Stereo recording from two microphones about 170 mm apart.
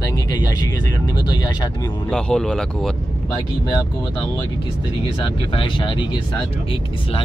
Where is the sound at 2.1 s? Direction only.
5° left (ahead or behind).